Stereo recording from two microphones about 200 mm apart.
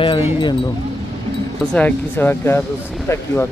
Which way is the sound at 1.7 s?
10° left (ahead or behind).